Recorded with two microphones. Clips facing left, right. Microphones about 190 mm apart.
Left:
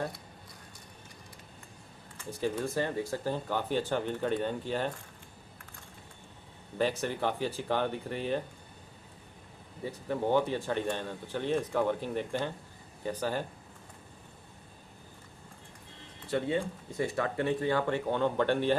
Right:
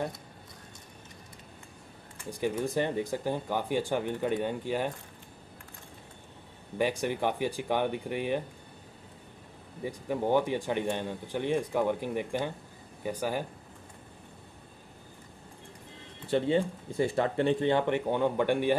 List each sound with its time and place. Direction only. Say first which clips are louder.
2.3 s speech: right 2 dB; 15° right (ahead or behind)
6.8 s speech: right 1 dB; 15° right (ahead or behind)
9.8 s speech: right 1 dB; 15° right (ahead or behind)
16.3 s speech: right 4 dB; 30° right (ahead or behind); by 18.8 s 15° right (ahead or behind)